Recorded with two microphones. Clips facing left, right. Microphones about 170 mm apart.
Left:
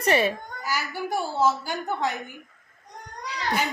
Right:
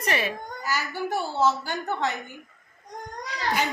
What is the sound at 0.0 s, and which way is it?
Speech, 30° left (ahead or behind).